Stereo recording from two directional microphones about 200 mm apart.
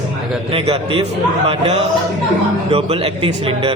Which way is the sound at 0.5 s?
30° right (ahead or behind).